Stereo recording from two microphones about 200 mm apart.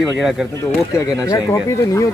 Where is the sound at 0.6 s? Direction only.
15° left (ahead or behind).